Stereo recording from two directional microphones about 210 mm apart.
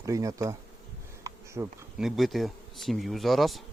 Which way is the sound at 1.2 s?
15° right (ahead or behind).